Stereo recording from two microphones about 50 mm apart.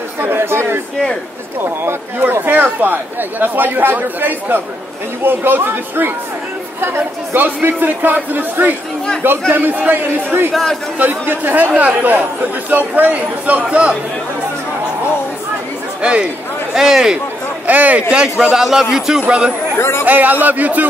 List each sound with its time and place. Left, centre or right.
0.2 s a sound: right
1.6 s speech: right
16.0 s speech: right
16.7 s a man's voice: centre
17.6 s speech: right
18.5 s a man's voice: centre
19.2 s speech: right
19.8 s speech: left
20.1 s speech: right